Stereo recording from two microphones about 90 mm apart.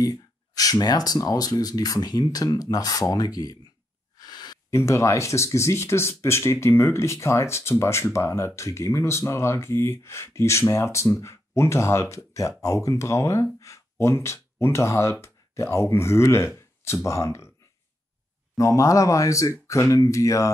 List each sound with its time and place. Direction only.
0.0 s speech: 45° left (ahead or behind)
4.2 s a sound: 50° left (ahead or behind)
4.6 s speech: 30° left (ahead or behind)
18.6 s speech: 35° left (ahead or behind)